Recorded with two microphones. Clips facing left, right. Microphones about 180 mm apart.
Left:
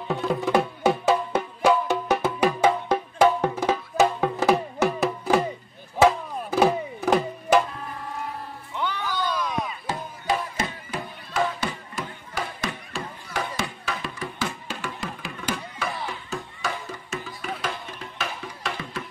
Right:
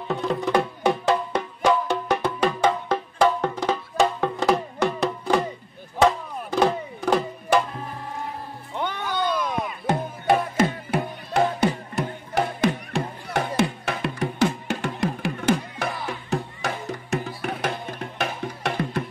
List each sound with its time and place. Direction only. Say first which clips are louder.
0.1 s music: even; centre (ahead or behind)
8.7 s music: right 2 dB; 50° right (ahead or behind)
16.3 s music: right 2 dB; 65° right (ahead or behind)